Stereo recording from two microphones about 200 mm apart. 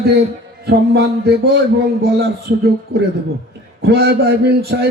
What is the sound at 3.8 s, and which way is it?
A man's voice, 55° right (ahead or behind).